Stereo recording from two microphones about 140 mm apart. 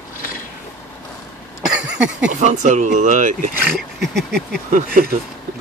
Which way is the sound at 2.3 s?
60° right (ahead or behind).